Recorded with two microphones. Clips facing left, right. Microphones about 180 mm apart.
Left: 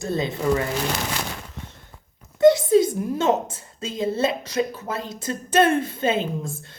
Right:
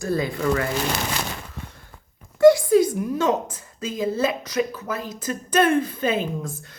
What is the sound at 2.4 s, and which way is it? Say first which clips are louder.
A woman's voice: right 1 dB; 20° left (ahead or behind).